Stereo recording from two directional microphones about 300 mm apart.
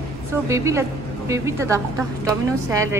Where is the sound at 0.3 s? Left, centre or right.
Centre.